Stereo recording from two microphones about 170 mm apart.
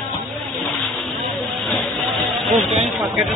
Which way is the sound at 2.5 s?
35° right (ahead or behind).